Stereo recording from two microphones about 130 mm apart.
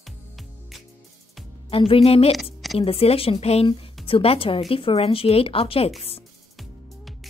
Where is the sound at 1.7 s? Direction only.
45° left (ahead or behind).